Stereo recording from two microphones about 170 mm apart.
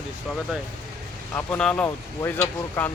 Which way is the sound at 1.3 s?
10° left (ahead or behind).